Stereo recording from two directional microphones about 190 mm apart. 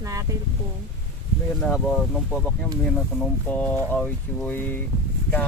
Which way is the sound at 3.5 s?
10° left (ahead or behind).